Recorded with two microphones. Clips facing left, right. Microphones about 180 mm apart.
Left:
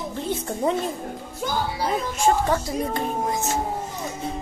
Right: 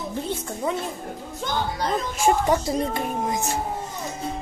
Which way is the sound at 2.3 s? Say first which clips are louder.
Right 1 dB; 15° right (ahead or behind).